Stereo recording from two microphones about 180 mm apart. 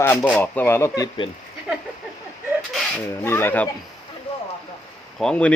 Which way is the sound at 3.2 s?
10° left (ahead or behind).